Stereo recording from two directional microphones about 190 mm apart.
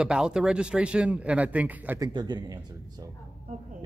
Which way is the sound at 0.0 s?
5° right (ahead or behind).